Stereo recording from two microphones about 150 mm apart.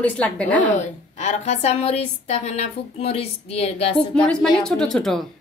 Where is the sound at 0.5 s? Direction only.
55° left (ahead or behind).